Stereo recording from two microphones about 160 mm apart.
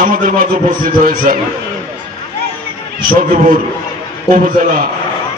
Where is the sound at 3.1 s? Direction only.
60° right (ahead or behind).